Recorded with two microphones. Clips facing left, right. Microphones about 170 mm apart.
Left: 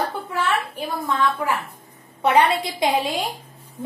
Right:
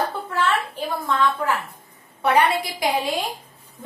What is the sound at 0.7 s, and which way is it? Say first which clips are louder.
A woman's voice: right 1 dB; 15° left (ahead or behind).